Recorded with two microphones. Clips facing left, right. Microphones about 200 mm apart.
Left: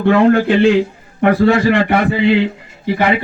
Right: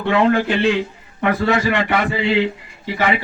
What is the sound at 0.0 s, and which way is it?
A man's voice, 45° left (ahead or behind).